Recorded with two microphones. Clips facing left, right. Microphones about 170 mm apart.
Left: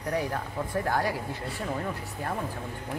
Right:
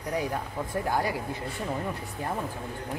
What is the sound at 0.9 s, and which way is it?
Speech, 15° right (ahead or behind).